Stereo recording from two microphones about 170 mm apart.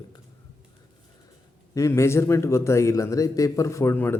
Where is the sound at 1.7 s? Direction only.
15° left (ahead or behind).